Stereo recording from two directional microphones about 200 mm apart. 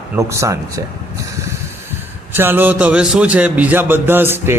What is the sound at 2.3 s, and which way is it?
Speech, 10° right (ahead or behind).